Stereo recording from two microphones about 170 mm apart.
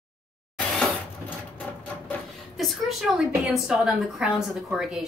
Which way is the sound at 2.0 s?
Centre (ahead or behind).